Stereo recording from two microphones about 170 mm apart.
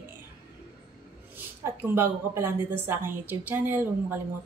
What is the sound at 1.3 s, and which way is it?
A woman's voice, 15° right (ahead or behind).